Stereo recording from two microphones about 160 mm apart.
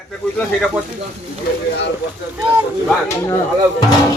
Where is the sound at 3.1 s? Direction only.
15° left (ahead or behind).